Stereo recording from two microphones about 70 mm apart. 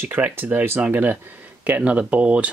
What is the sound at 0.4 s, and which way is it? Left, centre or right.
Speech, right.